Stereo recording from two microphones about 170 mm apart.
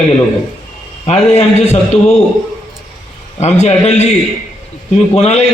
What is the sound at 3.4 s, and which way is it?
Speech, 40° left (ahead or behind).